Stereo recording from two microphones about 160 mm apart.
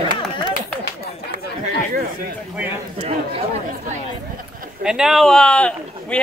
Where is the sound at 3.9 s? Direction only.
55° right (ahead or behind).